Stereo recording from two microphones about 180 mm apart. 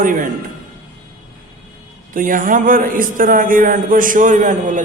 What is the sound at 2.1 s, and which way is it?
A man's voice, 50° right (ahead or behind).